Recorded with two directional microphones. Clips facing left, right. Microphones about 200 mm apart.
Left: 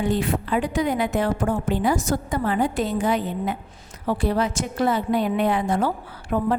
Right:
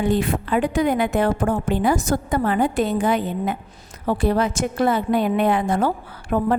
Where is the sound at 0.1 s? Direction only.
55° right (ahead or behind).